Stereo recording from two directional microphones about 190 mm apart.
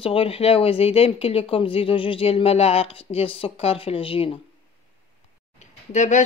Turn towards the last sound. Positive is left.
turn(degrees=40)  # may be behind; listen again after turning